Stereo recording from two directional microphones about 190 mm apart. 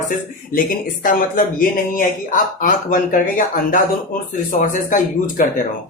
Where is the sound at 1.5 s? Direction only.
45° left (ahead or behind).